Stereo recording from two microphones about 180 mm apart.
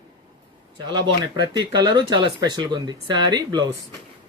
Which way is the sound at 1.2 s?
25° right (ahead or behind).